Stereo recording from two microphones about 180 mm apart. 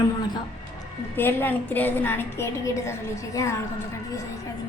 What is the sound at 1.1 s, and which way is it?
A woman's voice, 10° left (ahead or behind).